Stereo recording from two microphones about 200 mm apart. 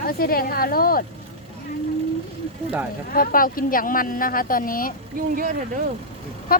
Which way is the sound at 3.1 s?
45° left (ahead or behind).